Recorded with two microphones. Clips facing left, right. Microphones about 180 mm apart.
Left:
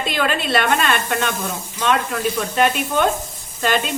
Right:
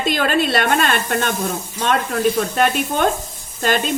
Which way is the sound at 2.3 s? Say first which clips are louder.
Right 1 dB; 45° right (ahead or behind).